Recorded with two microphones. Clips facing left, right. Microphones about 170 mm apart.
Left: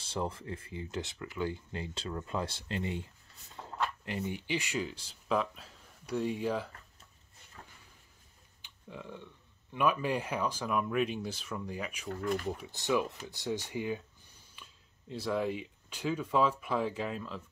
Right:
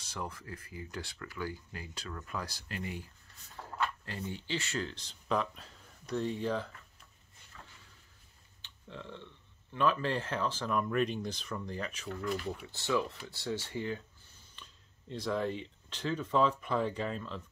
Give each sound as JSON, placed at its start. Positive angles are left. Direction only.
{"t": 0.0, "sound": "speech", "side_deg": 30}
{"t": 3.6, "sound": "a sound", "side_deg": 15}
{"t": 4.0, "sound": "speech", "side_deg": 20}
{"t": 8.6, "sound": "speech", "side_deg": 10}
{"t": 12.1, "sound": "speech", "side_deg": 40}
{"t": 12.6, "sound": "speech", "side_deg": 15}